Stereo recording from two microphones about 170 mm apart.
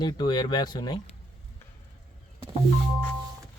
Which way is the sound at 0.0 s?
25° left (ahead or behind).